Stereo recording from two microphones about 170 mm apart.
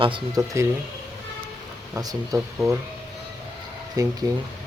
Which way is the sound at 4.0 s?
20° right (ahead or behind).